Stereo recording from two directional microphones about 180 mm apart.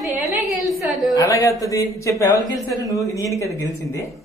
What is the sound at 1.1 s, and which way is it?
A man's voice, 20° left (ahead or behind).